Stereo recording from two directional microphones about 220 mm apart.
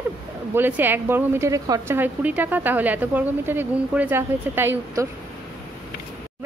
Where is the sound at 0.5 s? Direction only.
10° right (ahead or behind).